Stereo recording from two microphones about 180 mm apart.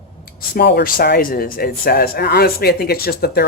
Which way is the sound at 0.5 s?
60° left (ahead or behind).